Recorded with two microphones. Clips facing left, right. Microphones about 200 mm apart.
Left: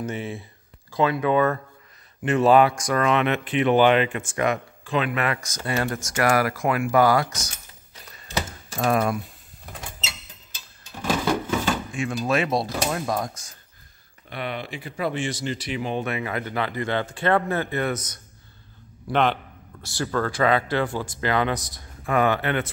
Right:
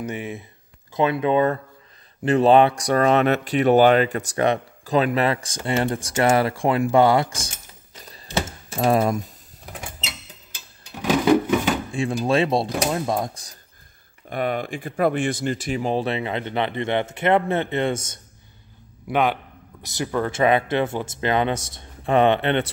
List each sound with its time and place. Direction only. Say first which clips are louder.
0.0 s speech: right 1 dB; 15° right (ahead or behind)
8.4 s typing: right 3 dB; 25° right (ahead or behind)
11.0 s a sound: right 6 dB; 15° right (ahead or behind)
11.9 s speech: right 5 dB; 30° right (ahead or behind)
14.3 s speech: right 6 dB; 45° right (ahead or behind); by 18.2 s 25° right (ahead or behind)
19.8 s speech: right 1 dB; 20° right (ahead or behind)